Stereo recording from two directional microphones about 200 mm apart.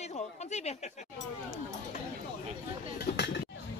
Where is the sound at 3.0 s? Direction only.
60° left (ahead or behind).